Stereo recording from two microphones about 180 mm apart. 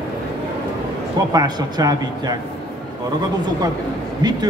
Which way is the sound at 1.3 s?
20° right (ahead or behind).